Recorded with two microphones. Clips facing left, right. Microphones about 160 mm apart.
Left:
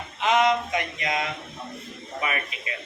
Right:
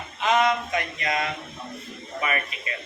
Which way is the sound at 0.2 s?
20° left (ahead or behind).